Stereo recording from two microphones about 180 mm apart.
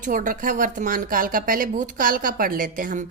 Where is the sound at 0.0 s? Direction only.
50° right (ahead or behind).